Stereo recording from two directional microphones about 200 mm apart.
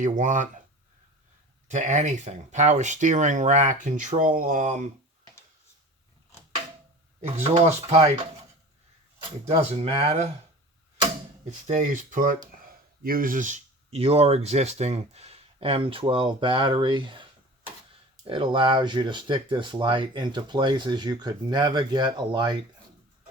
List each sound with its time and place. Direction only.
0.0 s speech: 40° right (ahead or behind)
1.6 s speech: 40° right (ahead or behind)
7.2 s speech: 35° right (ahead or behind)
9.5 s speech: 30° right (ahead or behind)
11.4 s speech: 35° right (ahead or behind)
18.3 s speech: 25° right (ahead or behind)